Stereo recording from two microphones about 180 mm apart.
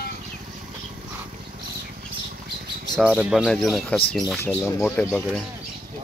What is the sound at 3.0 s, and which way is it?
Speech, 5° right (ahead or behind).